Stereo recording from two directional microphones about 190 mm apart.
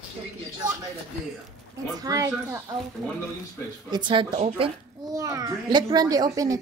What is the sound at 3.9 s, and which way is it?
Speech, 25° right (ahead or behind).